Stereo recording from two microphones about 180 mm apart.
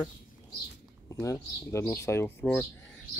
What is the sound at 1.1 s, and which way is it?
Speech, 15° left (ahead or behind).